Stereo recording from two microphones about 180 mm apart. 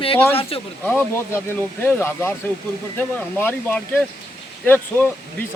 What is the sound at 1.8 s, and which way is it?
Speech, 15° left (ahead or behind).